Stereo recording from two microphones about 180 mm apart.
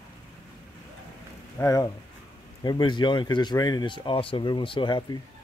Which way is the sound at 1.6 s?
20° left (ahead or behind).